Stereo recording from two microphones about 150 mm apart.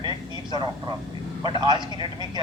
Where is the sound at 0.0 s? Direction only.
30° right (ahead or behind).